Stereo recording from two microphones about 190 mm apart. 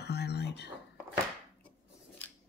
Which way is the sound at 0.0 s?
60° left (ahead or behind).